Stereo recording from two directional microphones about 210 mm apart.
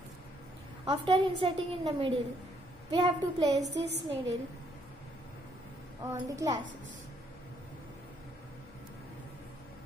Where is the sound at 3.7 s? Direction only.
55° right (ahead or behind).